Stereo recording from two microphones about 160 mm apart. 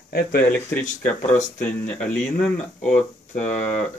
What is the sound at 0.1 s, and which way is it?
Speech, 70° left (ahead or behind).